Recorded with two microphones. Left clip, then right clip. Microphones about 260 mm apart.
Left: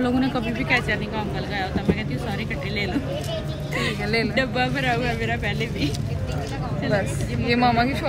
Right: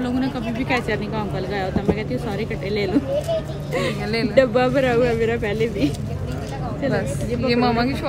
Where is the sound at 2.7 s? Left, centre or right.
Right.